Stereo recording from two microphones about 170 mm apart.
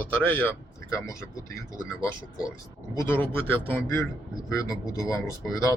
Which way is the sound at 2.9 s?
10° left (ahead or behind).